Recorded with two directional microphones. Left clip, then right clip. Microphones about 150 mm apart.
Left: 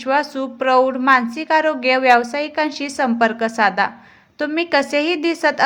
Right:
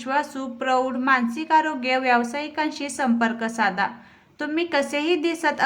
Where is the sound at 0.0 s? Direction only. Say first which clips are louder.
Left 6 dB; 30° left (ahead or behind).